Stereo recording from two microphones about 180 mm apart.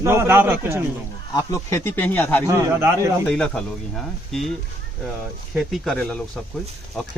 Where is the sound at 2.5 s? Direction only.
15° right (ahead or behind).